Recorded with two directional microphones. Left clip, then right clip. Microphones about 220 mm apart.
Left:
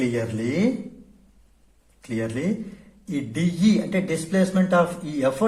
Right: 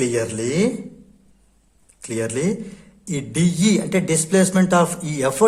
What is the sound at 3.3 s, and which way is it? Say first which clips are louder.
A man's voice: right 4 dB; 45° right (ahead or behind).